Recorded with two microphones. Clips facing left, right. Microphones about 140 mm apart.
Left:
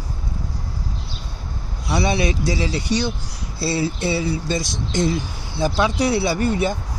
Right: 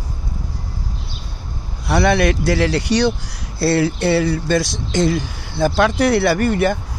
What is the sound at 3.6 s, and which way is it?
Speech, 55° right (ahead or behind).